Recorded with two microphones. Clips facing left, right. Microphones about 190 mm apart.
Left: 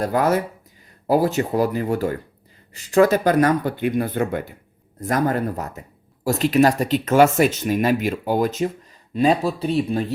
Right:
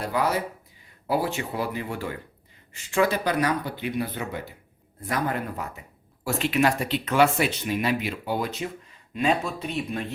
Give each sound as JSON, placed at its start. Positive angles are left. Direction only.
{"t": 0.0, "sound": "speech", "side_deg": 45}